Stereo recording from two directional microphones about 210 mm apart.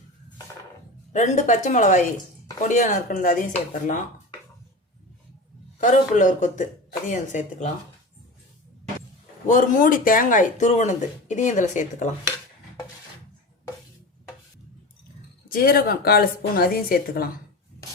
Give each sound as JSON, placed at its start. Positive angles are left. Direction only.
{"t": 1.1, "sound": "speech", "side_deg": 35}
{"t": 5.8, "sound": "speech", "side_deg": 40}
{"t": 9.5, "sound": "speech", "side_deg": 40}
{"t": 15.4, "sound": "a woman's voice", "side_deg": 45}